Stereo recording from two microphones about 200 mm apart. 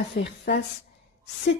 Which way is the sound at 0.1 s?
60° left (ahead or behind).